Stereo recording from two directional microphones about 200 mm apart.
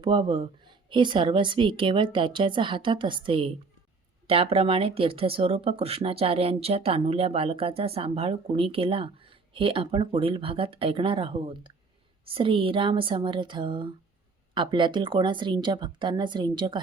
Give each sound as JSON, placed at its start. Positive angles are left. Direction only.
{"t": 0.0, "sound": "speech", "side_deg": -25}